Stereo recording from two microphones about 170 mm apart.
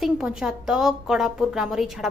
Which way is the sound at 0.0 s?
5° right (ahead or behind).